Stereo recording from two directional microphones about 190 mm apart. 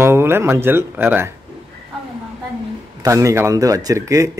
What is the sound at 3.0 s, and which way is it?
A man's voice, 15° right (ahead or behind).